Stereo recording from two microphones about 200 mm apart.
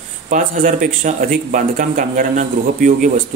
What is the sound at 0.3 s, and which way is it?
Speech, 40° right (ahead or behind).